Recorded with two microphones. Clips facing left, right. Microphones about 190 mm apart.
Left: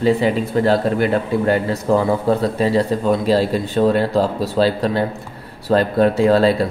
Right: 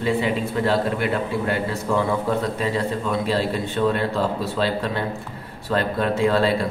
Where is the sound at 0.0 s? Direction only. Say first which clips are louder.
Left 6 dB; 40° left (ahead or behind).